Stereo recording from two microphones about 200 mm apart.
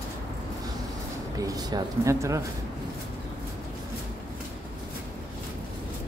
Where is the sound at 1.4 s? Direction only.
20° right (ahead or behind).